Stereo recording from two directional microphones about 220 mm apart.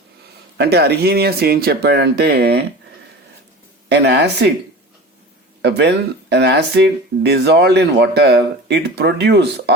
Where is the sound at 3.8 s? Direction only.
50° right (ahead or behind).